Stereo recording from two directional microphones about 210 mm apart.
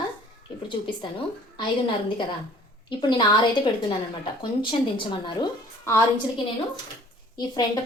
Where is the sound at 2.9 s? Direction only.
20° left (ahead or behind).